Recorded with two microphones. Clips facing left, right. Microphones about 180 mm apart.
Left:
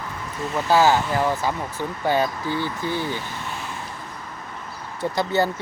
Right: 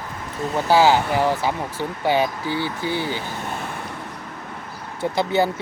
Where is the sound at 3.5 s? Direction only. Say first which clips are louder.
Right 3 dB; 55° right (ahead or behind).